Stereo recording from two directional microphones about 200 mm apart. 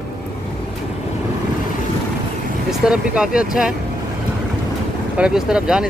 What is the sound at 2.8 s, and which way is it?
Speech, 5° right (ahead or behind).